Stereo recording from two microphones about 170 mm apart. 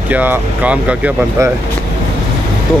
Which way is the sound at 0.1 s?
10° right (ahead or behind).